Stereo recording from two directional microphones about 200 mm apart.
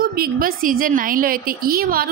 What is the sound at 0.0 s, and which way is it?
A woman's voice, 50° right (ahead or behind).